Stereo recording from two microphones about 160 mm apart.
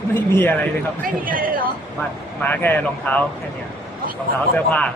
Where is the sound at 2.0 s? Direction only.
10° left (ahead or behind).